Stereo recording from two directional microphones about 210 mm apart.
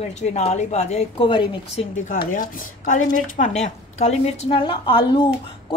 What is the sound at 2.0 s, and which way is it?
A woman's voice, 40° left (ahead or behind).